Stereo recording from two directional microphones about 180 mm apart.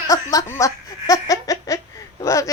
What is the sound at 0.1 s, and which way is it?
Laughter, 20° left (ahead or behind).